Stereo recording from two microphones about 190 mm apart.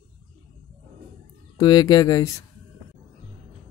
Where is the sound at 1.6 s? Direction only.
20° left (ahead or behind).